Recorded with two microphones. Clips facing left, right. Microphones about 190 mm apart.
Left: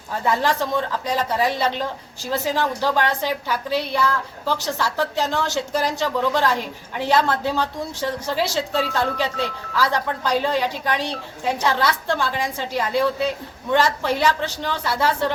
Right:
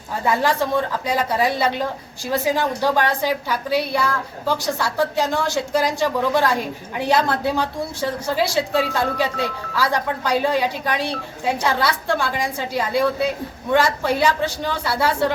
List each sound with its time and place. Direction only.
0.3 s a woman's voice: 10° right (ahead or behind)